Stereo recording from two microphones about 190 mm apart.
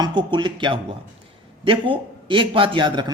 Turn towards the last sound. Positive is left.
turn(degrees=-25)  # may be behind; listen again after turning